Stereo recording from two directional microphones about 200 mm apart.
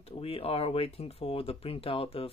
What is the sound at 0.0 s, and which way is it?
Speech, 30° left (ahead or behind).